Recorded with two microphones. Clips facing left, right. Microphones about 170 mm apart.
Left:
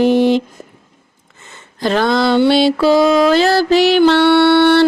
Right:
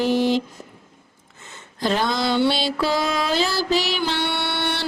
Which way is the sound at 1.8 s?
70° left (ahead or behind).